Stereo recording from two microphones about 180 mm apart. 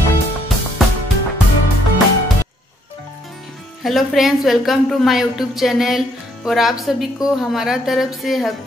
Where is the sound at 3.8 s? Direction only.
Centre (ahead or behind).